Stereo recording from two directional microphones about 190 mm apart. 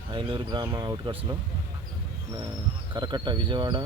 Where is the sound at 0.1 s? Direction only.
25° right (ahead or behind).